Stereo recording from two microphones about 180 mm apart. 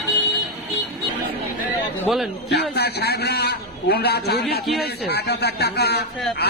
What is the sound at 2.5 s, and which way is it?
A man's voice, 65° left (ahead or behind).